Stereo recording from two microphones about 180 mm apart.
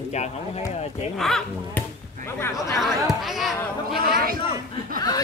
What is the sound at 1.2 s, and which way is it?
Speech, centre (ahead or behind).